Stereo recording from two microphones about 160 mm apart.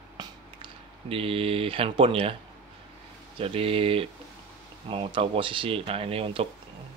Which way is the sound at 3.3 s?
35° right (ahead or behind).